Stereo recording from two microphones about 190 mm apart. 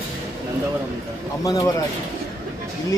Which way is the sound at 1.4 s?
20° left (ahead or behind).